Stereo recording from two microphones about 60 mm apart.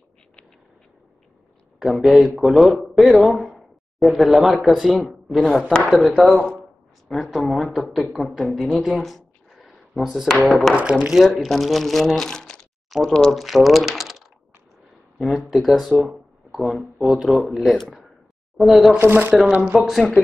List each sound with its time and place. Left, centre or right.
1.8 s speech: centre
8.7 s a sound: centre
10.3 s speech: centre
10.7 s speech: right
11.1 s speech: centre
13.3 s speech: centre
18.9 s speech: right
19.7 s speech: centre